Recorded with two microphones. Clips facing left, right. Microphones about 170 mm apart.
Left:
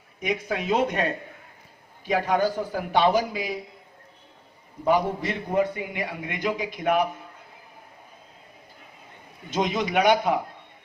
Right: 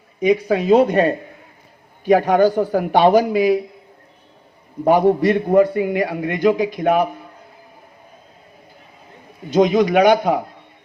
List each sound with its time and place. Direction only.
0.2 s speech: 35° right (ahead or behind)
2.0 s a man's voice: 55° right (ahead or behind)
4.8 s a man's voice: 50° right (ahead or behind); by 6.9 s 35° right (ahead or behind)
9.5 s speech: 35° right (ahead or behind)
9.8 s speech: 65° right (ahead or behind)